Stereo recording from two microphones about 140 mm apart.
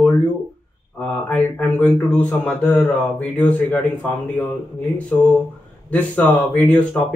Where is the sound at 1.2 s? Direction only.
10° left (ahead or behind).